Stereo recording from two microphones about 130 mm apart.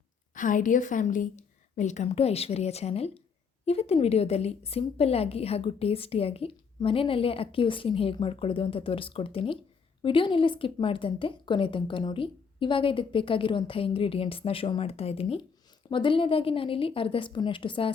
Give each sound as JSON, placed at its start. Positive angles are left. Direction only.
{"t": 0.3, "sound": "a woman's voice", "side_deg": 90}